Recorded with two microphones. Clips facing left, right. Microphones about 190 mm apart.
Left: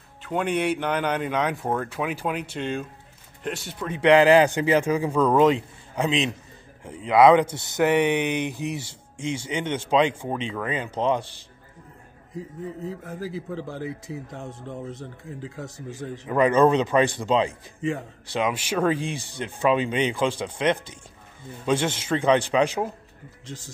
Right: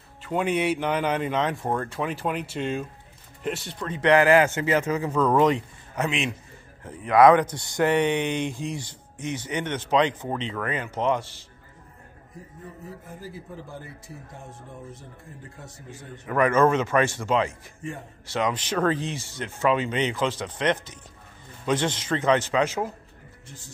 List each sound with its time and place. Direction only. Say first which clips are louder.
0.2 s speech: even; centre (ahead or behind)
3.8 s a man's voice: left 3 dB; 10° left (ahead or behind)
7.4 s speech: left 1 dB; 20° left (ahead or behind)
7.7 s speech: left 1 dB; 10° left (ahead or behind)
12.8 s speech: left 5 dB; 90° left
16.3 s speech: left 2 dB; 15° left (ahead or behind)
23.4 s speech: left 9 dB; 90° left